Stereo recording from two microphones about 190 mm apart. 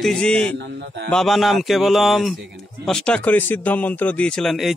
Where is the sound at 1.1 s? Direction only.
Centre (ahead or behind).